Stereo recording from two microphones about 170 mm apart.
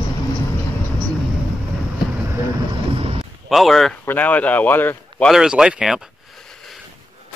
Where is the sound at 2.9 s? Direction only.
35° right (ahead or behind).